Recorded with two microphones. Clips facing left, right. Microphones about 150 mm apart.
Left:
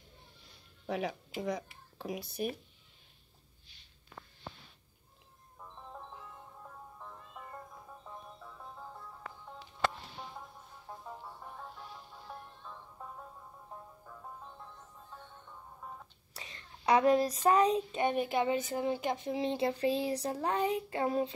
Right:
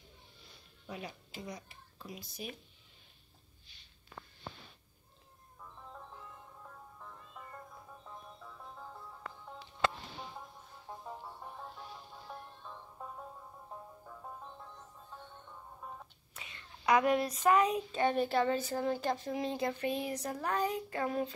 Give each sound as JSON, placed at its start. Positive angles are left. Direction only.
{"t": 0.8, "sound": "speech", "side_deg": 90}
{"t": 2.0, "sound": "speech", "side_deg": 70}
{"t": 16.3, "sound": "a child's voice", "side_deg": 35}
{"t": 17.9, "sound": "speech", "side_deg": 15}